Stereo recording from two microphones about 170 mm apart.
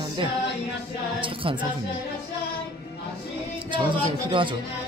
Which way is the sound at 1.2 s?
30° right (ahead or behind).